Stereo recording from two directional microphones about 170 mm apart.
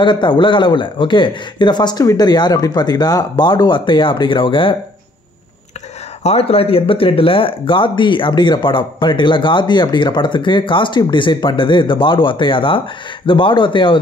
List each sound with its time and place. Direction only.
0.0 s speech: 30° left (ahead or behind)
6.2 s speech: 35° left (ahead or behind)